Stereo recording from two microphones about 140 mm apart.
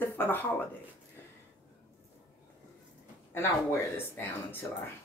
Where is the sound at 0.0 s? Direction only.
15° left (ahead or behind).